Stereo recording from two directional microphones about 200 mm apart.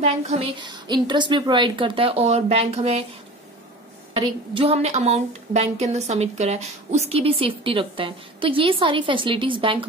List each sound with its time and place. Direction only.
0.0 s a woman's voice: 30° right (ahead or behind)
4.1 s a woman's voice: 25° right (ahead or behind)